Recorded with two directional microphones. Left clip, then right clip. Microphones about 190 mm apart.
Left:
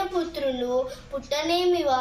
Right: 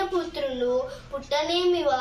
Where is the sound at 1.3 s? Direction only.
10° right (ahead or behind).